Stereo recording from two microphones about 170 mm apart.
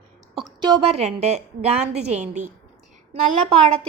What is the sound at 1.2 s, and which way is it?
Speech, 40° right (ahead or behind).